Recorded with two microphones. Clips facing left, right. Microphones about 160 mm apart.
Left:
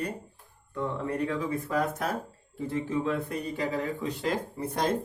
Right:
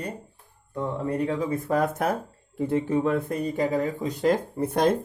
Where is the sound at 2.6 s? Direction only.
55° right (ahead or behind).